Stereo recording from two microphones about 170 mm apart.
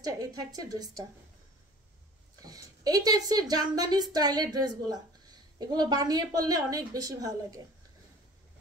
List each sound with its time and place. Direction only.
0.0 s a woman's voice: 20° right (ahead or behind)
2.4 s a woman's voice: 20° right (ahead or behind)